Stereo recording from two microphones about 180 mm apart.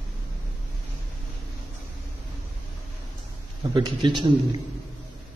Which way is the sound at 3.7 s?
25° right (ahead or behind).